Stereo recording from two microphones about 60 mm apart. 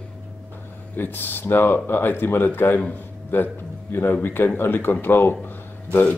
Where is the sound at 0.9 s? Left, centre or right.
Left.